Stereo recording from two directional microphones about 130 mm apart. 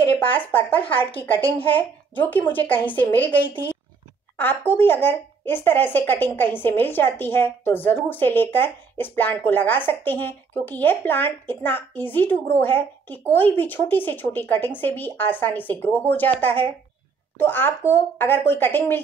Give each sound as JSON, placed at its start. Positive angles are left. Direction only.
{"t": 0.4, "sound": "speech", "side_deg": 15}
{"t": 0.8, "sound": "a woman's voice", "side_deg": 45}
{"t": 1.2, "sound": "speech", "side_deg": 15}
{"t": 4.4, "sound": "speech", "side_deg": 15}